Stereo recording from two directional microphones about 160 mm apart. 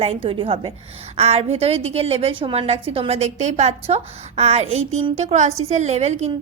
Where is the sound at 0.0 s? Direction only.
35° right (ahead or behind).